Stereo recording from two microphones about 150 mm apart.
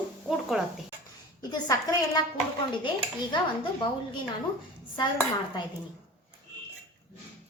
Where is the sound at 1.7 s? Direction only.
25° left (ahead or behind).